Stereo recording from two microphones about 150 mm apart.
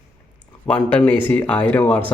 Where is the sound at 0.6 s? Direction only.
10° left (ahead or behind).